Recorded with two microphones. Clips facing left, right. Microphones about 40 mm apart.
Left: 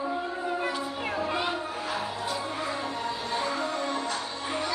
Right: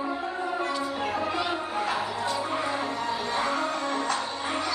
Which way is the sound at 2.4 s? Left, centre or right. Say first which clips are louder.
Right 3 dB; right.